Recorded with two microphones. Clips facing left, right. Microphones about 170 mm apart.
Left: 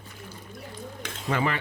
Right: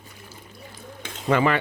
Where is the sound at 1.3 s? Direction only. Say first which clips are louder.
Right 7 dB; 90° right.